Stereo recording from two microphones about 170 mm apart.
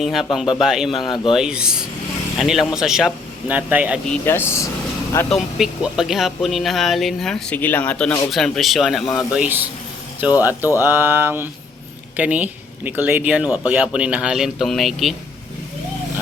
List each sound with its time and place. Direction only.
0.0 s speech: centre (ahead or behind)
1.0 s speech: 25° left (ahead or behind)
1.3 s speech: 5° right (ahead or behind)
4.0 s speech: 10° left (ahead or behind)
5.3 s speech: centre (ahead or behind)
10.2 s speech: 10° right (ahead or behind)